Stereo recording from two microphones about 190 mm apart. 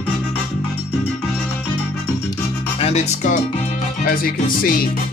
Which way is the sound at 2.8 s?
35° left (ahead or behind).